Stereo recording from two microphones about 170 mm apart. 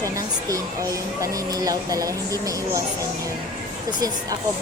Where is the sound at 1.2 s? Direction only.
20° right (ahead or behind).